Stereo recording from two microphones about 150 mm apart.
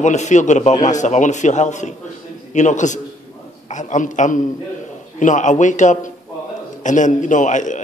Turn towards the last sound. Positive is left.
turn(degrees=55)  # may be behind; listen again after turning